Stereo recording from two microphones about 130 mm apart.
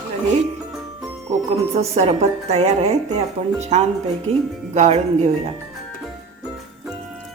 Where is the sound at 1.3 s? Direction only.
55° right (ahead or behind).